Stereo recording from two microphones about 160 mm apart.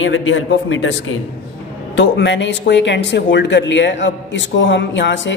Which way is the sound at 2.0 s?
90° left.